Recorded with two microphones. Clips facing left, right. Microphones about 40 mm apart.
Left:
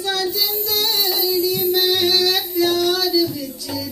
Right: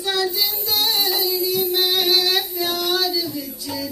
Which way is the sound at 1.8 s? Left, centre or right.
Centre.